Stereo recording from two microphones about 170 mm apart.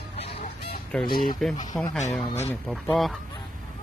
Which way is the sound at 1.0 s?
55° left (ahead or behind).